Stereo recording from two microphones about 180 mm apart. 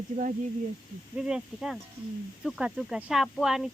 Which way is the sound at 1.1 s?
5° right (ahead or behind).